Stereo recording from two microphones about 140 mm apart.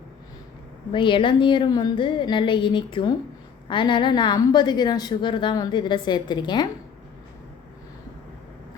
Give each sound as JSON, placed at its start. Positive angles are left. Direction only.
{"t": 0.9, "sound": "a woman's voice", "side_deg": 35}